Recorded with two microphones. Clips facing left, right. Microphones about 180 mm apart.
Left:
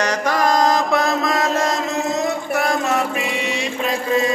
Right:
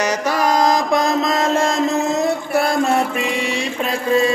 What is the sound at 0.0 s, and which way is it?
Mantra, 5° right (ahead or behind).